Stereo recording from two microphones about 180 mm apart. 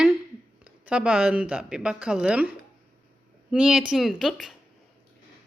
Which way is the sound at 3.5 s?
5° right (ahead or behind).